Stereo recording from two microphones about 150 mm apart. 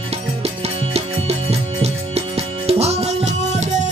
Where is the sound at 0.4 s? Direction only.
45° right (ahead or behind).